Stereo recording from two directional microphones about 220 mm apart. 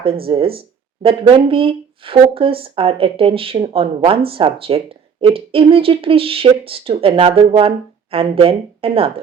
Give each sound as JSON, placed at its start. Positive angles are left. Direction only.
{"t": 0.3, "sound": "speech", "side_deg": -25}